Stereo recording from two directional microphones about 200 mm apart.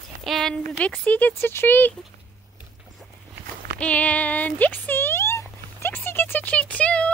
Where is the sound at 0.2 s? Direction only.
Centre (ahead or behind).